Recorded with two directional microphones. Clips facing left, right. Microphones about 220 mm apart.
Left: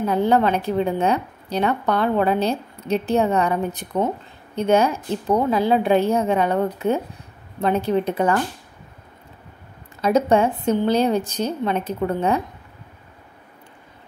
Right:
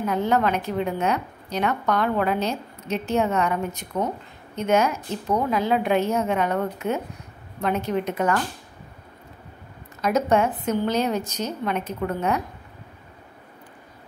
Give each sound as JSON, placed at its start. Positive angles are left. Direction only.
{"t": 0.0, "sound": "a woman's voice", "side_deg": 30}
{"t": 10.0, "sound": "a woman's voice", "side_deg": 30}